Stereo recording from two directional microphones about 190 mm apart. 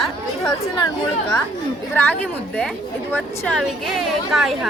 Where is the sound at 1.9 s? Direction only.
10° left (ahead or behind).